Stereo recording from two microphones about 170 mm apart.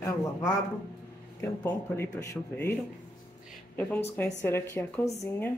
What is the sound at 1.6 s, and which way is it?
A woman's voice, 15° left (ahead or behind).